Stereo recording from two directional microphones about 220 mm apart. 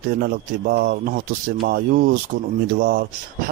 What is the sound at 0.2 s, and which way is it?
Speech, 45° right (ahead or behind).